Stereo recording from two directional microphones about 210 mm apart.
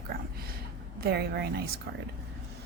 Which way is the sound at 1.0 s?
50° right (ahead or behind).